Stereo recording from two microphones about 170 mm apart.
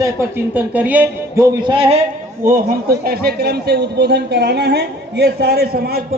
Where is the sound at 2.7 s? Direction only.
65° right (ahead or behind).